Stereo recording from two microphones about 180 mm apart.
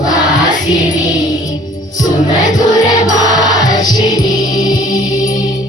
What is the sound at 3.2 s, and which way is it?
Music, 20° left (ahead or behind).